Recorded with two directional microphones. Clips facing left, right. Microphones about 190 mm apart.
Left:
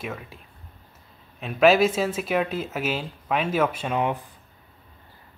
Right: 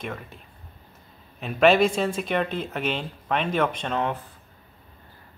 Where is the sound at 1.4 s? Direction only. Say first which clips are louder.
Even; centre (ahead or behind).